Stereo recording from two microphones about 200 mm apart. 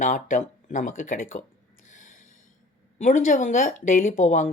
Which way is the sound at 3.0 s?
40° left (ahead or behind).